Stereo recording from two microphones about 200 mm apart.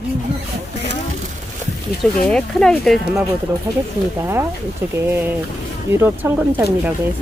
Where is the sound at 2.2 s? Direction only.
5° left (ahead or behind).